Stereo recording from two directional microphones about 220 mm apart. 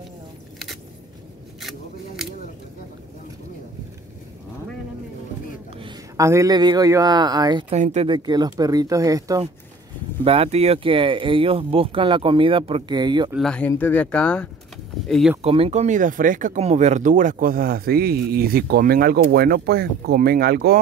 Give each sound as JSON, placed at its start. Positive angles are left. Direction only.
{"t": 1.6, "sound": "scissors", "side_deg": 0}
{"t": 5.8, "sound": "speech", "side_deg": -15}
{"t": 7.7, "sound": "speech", "side_deg": -30}
{"t": 10.2, "sound": "speech", "side_deg": -25}
{"t": 13.3, "sound": "speech", "side_deg": 0}
{"t": 15.4, "sound": "speech", "side_deg": -25}